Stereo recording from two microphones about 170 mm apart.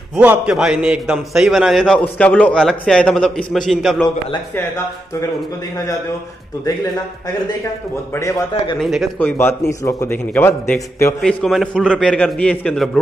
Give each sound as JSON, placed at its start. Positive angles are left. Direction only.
{"t": 0.2, "sound": "a man's voice", "side_deg": -5}
{"t": 8.2, "sound": "a man's voice", "side_deg": 20}
{"t": 8.7, "sound": "a man's voice", "side_deg": 0}
{"t": 9.2, "sound": "a man's voice", "side_deg": 15}
{"t": 11.1, "sound": "a man's voice", "side_deg": 0}